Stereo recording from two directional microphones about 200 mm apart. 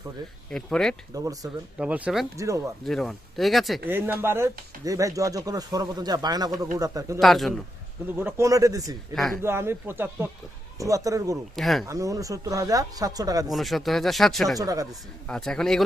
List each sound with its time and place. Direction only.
0.5 s speech: centre (ahead or behind)
1.1 s speech: 15° right (ahead or behind)
1.8 s speech: 5° right (ahead or behind)
2.8 s speech: centre (ahead or behind)
3.8 s speech: 10° right (ahead or behind)
7.2 s speech: centre (ahead or behind)
8.1 s speech: 10° right (ahead or behind)
11.5 s speech: centre (ahead or behind)
11.9 s speech: 15° right (ahead or behind)
13.5 s speech: centre (ahead or behind)
14.6 s speech: 15° right (ahead or behind)
15.3 s speech: 5° left (ahead or behind)